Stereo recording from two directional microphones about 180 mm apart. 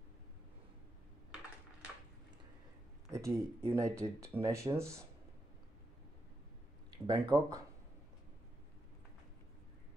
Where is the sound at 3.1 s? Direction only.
15° right (ahead or behind).